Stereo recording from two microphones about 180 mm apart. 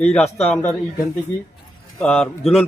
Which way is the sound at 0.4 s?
5° left (ahead or behind).